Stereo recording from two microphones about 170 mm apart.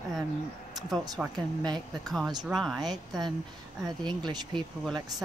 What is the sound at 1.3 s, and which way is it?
Speech, 25° right (ahead or behind).